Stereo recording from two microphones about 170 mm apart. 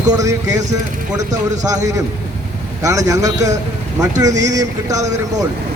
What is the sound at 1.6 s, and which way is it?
Speech, 20° right (ahead or behind).